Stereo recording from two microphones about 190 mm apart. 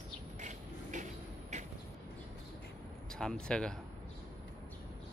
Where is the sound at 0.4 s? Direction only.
40° right (ahead or behind).